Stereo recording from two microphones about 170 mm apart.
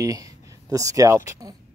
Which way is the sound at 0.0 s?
20° right (ahead or behind).